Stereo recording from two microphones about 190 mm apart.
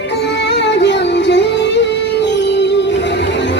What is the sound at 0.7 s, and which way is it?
Music, 65° left (ahead or behind).